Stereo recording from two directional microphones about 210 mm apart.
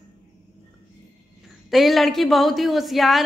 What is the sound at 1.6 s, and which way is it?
A woman's voice, centre (ahead or behind).